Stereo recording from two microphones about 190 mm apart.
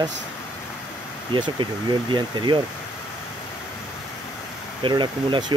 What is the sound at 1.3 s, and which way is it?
Speech, 25° right (ahead or behind).